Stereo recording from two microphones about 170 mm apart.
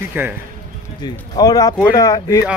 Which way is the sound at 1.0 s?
25° left (ahead or behind).